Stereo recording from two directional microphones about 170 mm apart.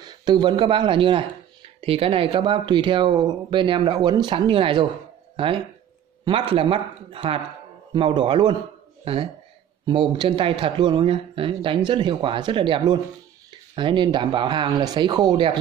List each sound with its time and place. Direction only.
0.0 s speech: 25° right (ahead or behind)